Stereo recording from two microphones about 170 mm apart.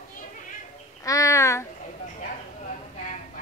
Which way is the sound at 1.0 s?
20° left (ahead or behind).